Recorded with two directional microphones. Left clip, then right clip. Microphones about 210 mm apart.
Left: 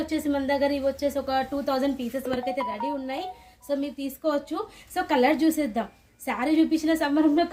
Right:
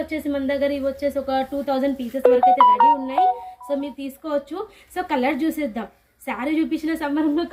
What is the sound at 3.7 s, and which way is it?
A woman's voice, 25° left (ahead or behind).